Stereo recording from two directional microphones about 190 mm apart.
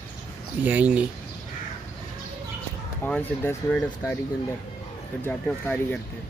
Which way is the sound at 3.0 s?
10° left (ahead or behind).